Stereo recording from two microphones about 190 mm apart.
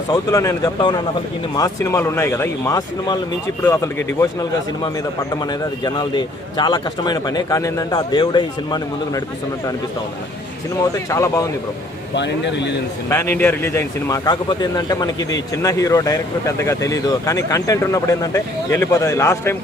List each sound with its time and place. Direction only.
0.1 s a man's voice: 15° left (ahead or behind)
11.1 s speech: 15° left (ahead or behind)
12.1 s speech: 65° left (ahead or behind)
13.1 s speech: 10° left (ahead or behind)